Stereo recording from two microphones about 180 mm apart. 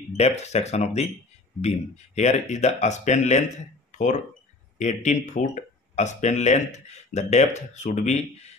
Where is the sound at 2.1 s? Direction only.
40° left (ahead or behind).